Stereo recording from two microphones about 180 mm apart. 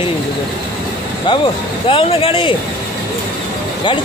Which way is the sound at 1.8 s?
30° left (ahead or behind).